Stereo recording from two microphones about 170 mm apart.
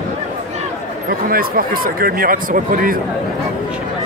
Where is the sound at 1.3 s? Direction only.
60° right (ahead or behind).